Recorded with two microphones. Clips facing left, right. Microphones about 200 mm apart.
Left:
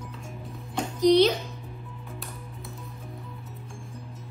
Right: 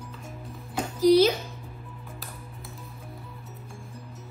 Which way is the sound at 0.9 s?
5° right (ahead or behind).